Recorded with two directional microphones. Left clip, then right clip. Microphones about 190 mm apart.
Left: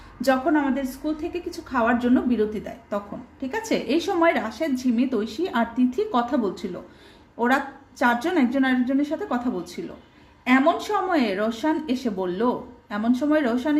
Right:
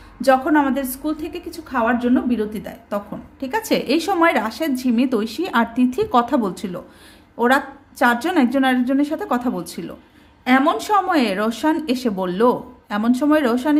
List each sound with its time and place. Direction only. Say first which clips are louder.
0.2 s a woman's voice: right 5 dB; 15° right (ahead or behind)
0.5 s a woman's voice: right 5 dB; 30° right (ahead or behind)